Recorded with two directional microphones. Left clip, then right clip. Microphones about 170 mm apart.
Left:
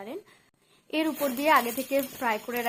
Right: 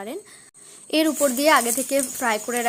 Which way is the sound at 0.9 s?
30° right (ahead or behind).